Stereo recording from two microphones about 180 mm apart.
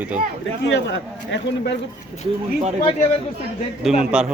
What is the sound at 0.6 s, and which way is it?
Speech, 85° left.